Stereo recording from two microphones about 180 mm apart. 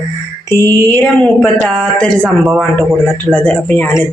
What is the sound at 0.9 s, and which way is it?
A man's voice, 10° left (ahead or behind).